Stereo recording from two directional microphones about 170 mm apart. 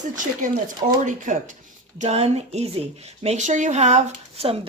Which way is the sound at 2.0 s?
40° right (ahead or behind).